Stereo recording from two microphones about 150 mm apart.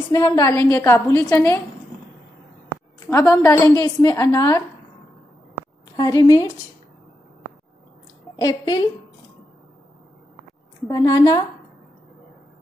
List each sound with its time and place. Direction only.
0.1 s a woman's voice: 25° left (ahead or behind)
3.1 s a woman's voice: 20° left (ahead or behind)
5.9 s a woman's voice: 25° left (ahead or behind)
8.4 s a woman's voice: 25° left (ahead or behind)
10.9 s a woman's voice: 25° left (ahead or behind)